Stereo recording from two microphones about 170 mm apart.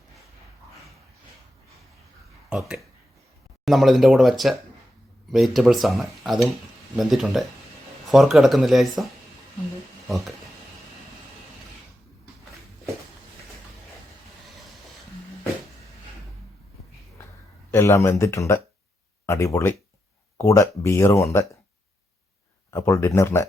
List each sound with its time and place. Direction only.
2.5 s speech: 5° right (ahead or behind)
17.7 s speech: 15° left (ahead or behind)
22.7 s speech: 15° left (ahead or behind)